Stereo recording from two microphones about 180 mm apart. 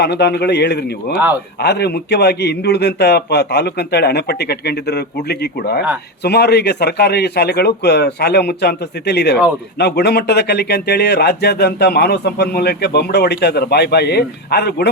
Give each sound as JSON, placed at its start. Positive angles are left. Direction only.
{"t": 0.0, "sound": "a man's voice", "side_deg": 65}